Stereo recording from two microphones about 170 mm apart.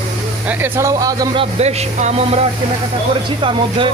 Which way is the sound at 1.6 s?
40° right (ahead or behind).